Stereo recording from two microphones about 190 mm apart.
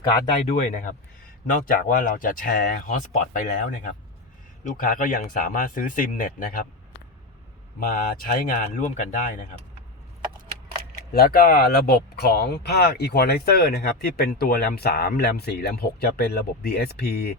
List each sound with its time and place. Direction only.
0.4 s speech: 40° left (ahead or behind)
7.8 s speech: 50° left (ahead or behind)
11.1 s speech: 50° left (ahead or behind)